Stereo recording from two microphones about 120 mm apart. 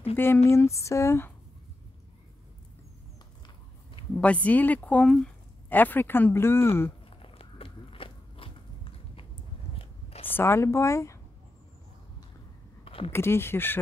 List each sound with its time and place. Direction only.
0.1 s speech: 20° left (ahead or behind)
4.2 s speech: 10° left (ahead or behind)
7.1 s biting: 50° left (ahead or behind)
10.2 s a woman's voice: 20° left (ahead or behind)
12.8 s a sound: 50° left (ahead or behind)
13.1 s speech: 20° left (ahead or behind)